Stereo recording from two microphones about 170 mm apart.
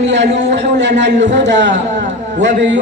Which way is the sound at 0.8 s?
90° right.